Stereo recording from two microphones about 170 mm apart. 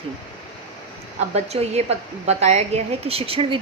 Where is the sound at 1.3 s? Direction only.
40° right (ahead or behind).